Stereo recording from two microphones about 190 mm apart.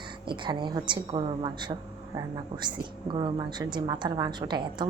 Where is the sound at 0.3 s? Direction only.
25° right (ahead or behind).